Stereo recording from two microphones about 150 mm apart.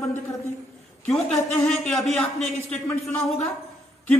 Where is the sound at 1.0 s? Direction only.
5° left (ahead or behind).